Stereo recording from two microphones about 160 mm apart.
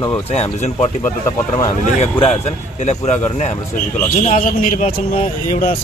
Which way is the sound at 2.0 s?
40° left (ahead or behind).